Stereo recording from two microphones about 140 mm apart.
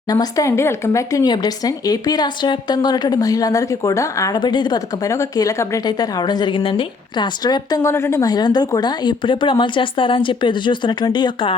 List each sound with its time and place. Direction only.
0.1 s speech: 25° left (ahead or behind)